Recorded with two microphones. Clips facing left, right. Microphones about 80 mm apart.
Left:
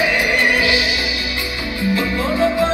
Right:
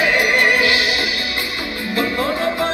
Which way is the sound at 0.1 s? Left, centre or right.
Right.